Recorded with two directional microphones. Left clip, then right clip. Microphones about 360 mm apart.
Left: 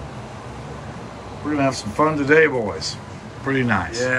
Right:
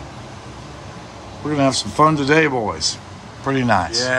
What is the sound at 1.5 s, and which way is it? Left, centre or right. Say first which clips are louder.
Speech: right 3 dB; centre.